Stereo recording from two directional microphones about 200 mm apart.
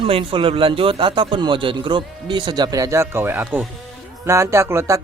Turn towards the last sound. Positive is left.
turn(degrees=-15)  # may be behind; listen again after turning